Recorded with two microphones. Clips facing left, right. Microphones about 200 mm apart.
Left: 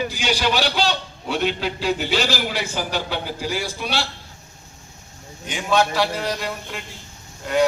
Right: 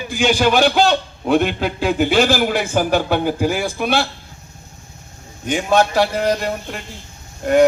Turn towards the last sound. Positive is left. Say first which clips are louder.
# right 7 dB
turn(degrees=-50)  # may be behind; listen again after turning